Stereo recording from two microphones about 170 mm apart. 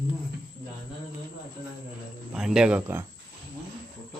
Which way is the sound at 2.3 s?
5° right (ahead or behind).